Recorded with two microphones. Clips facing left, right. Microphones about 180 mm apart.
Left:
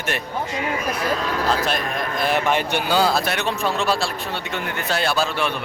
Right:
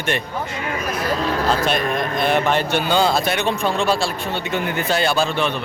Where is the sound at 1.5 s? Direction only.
Centre (ahead or behind).